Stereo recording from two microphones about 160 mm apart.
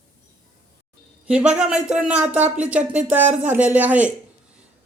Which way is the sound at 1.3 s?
5° right (ahead or behind).